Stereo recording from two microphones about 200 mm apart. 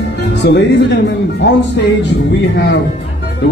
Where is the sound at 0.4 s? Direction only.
60° left (ahead or behind).